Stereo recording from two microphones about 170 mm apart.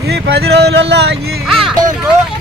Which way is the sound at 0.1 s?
75° right (ahead or behind).